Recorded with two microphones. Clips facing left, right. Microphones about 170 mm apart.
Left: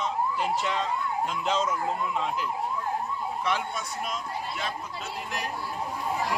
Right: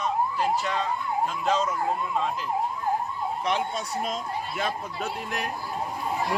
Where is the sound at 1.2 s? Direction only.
20° left (ahead or behind).